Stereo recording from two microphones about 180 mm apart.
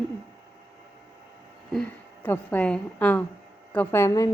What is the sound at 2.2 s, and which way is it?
A woman's voice, 10° left (ahead or behind).